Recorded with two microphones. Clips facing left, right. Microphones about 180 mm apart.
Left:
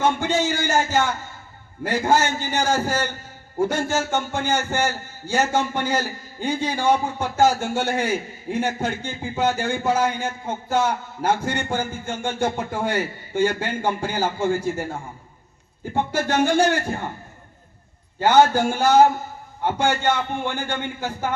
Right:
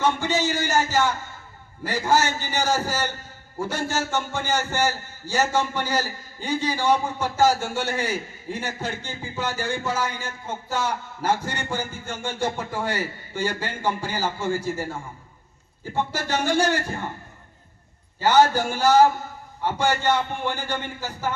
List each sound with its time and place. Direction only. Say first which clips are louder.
0.0 s a man's voice: left 2 dB; 55° left (ahead or behind)
16.0 s a man's voice: left 5 dB; 55° left (ahead or behind)
18.2 s a man's voice: left 2 dB; 55° left (ahead or behind)